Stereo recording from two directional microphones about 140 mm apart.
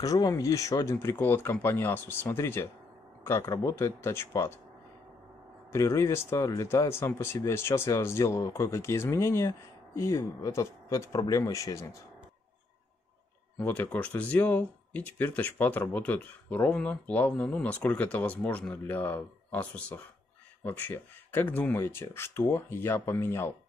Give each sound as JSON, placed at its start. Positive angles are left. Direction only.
{"t": 0.0, "sound": "speech", "side_deg": 25}
{"t": 5.7, "sound": "speech", "side_deg": 20}
{"t": 13.6, "sound": "speech", "side_deg": 10}